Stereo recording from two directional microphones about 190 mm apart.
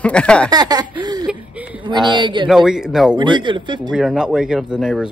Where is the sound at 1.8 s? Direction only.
25° right (ahead or behind).